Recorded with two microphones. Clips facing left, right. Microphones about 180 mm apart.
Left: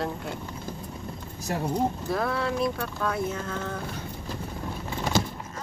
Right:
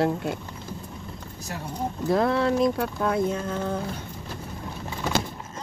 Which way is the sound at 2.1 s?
20° right (ahead or behind).